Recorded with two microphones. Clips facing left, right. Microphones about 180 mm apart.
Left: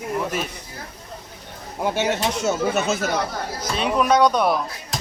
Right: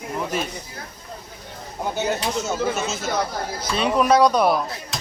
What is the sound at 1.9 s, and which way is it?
Speech, 85° left.